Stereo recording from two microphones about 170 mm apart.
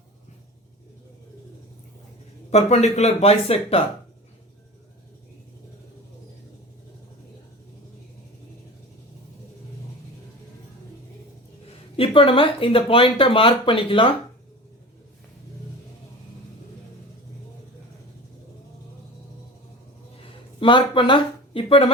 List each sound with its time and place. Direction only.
2.5 s speech: 40° left (ahead or behind)
11.9 s speech: 30° left (ahead or behind)
20.6 s speech: 30° left (ahead or behind)